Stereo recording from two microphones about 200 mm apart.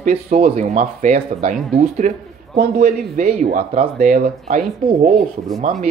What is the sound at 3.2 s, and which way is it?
Speech, 40° right (ahead or behind).